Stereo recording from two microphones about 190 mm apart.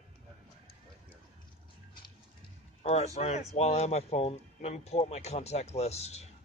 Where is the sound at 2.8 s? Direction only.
35° left (ahead or behind).